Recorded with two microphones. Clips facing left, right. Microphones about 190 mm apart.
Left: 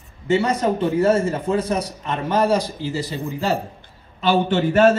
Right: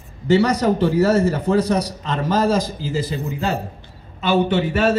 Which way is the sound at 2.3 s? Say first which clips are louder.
Even; 90° right.